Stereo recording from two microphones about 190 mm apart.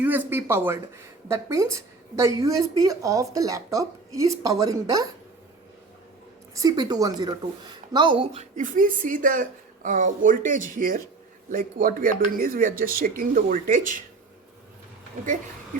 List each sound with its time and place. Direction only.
0.0 s a woman's voice: 10° right (ahead or behind)
6.5 s a woman's voice: 20° right (ahead or behind); by 14.0 s 45° right (ahead or behind)